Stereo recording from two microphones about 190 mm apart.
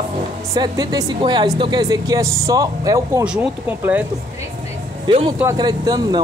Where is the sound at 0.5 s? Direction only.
20° right (ahead or behind).